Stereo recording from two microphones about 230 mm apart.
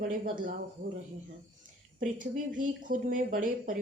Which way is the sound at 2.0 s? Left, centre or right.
Right.